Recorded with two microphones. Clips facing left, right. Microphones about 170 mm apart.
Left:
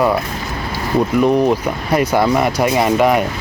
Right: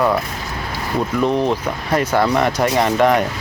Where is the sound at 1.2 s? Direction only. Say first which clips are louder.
Left 3 dB; 10° left (ahead or behind).